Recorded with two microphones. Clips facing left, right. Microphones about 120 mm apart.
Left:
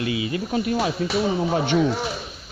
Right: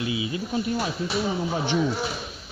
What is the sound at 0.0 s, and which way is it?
Speech, 65° left (ahead or behind).